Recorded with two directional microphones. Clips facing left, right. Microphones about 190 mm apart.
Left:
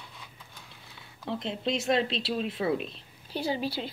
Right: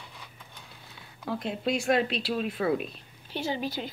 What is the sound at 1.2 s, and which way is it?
A woman's voice, 25° left (ahead or behind).